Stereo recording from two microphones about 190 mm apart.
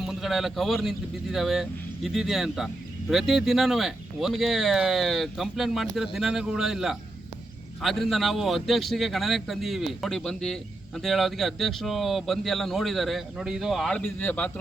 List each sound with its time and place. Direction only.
0.0 s a man's voice: centre (ahead or behind)